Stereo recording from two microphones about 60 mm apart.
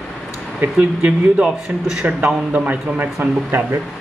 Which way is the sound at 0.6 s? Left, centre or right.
Right.